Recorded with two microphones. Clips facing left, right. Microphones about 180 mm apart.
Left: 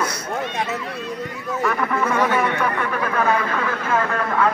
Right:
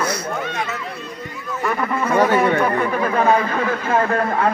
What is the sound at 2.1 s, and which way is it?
Speech, 40° right (ahead or behind).